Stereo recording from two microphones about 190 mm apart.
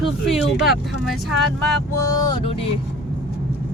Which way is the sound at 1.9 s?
15° left (ahead or behind).